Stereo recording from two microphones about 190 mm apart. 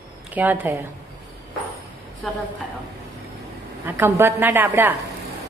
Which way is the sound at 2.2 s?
Centre (ahead or behind).